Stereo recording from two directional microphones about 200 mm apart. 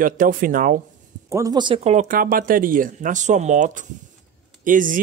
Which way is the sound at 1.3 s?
15° right (ahead or behind).